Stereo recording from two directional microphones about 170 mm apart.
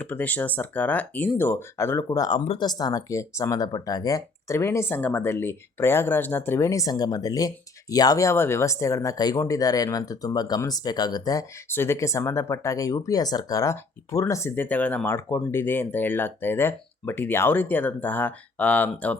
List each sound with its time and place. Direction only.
0.0 s speech: 10° left (ahead or behind)